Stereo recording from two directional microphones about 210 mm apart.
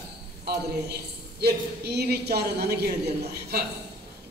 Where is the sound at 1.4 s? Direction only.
50° right (ahead or behind).